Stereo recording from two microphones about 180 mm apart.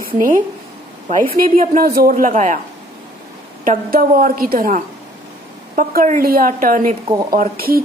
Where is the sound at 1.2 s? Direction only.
50° right (ahead or behind).